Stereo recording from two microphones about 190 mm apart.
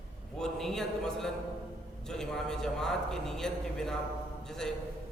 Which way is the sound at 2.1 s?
5° left (ahead or behind).